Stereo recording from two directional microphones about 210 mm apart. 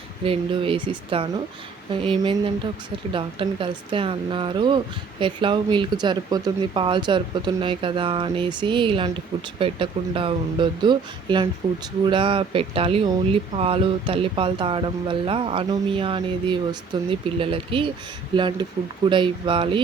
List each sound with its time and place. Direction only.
0.3 s speech: 25° right (ahead or behind)